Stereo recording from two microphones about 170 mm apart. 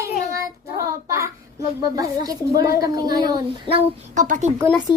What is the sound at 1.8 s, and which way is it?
Speech, 20° right (ahead or behind).